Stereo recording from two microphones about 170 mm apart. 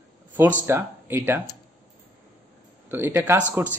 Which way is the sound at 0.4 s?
15° right (ahead or behind).